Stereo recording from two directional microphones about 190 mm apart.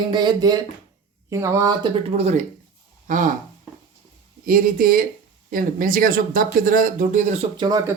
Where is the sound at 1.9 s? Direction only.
35° right (ahead or behind).